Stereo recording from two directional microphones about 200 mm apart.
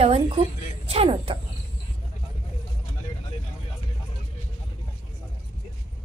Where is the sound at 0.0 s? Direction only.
30° right (ahead or behind).